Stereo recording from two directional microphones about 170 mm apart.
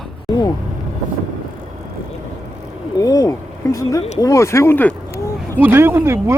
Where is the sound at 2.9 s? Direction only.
20° left (ahead or behind).